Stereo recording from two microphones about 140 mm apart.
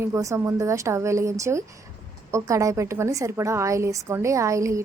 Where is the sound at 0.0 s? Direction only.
20° right (ahead or behind).